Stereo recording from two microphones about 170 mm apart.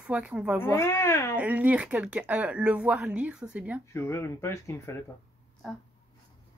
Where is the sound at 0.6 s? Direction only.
15° left (ahead or behind).